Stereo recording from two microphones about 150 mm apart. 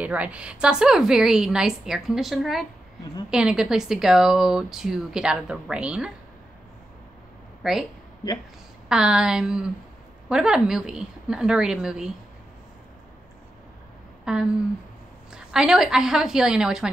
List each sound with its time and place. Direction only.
0.0 s speech: 10° right (ahead or behind)
7.6 s speech: centre (ahead or behind)
8.2 s speech: 25° left (ahead or behind)
8.8 s speech: 5° right (ahead or behind)
14.2 s speech: 5° right (ahead or behind)